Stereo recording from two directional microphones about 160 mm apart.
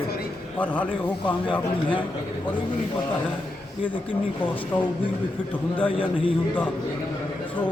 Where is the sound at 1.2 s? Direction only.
30° left (ahead or behind).